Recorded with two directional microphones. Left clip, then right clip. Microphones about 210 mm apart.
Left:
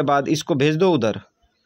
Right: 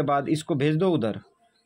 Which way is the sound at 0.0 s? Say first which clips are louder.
Left 5 dB; 30° left (ahead or behind).